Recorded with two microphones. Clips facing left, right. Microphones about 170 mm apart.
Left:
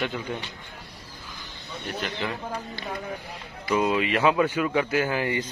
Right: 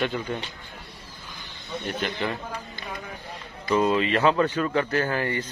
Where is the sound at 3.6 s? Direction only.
10° left (ahead or behind).